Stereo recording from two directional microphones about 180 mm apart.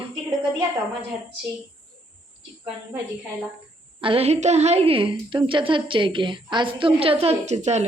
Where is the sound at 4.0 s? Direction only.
30° right (ahead or behind).